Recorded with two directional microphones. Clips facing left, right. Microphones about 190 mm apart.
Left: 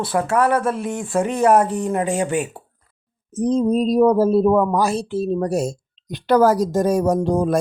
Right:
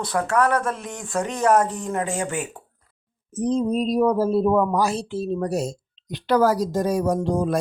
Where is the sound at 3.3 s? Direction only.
40° left (ahead or behind).